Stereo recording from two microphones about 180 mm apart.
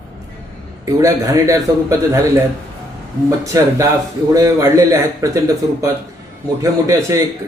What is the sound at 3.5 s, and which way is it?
A man's voice, 20° right (ahead or behind).